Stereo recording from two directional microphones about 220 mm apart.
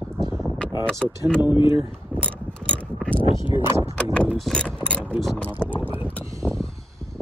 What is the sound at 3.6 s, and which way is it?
Speech, 10° right (ahead or behind).